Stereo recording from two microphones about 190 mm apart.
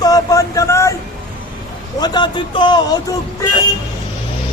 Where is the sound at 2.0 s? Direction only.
25° left (ahead or behind).